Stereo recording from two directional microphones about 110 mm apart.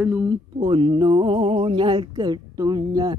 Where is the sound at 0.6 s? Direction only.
50° right (ahead or behind).